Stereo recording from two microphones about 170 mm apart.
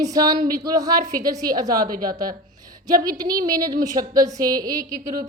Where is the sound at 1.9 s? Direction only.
55° right (ahead or behind).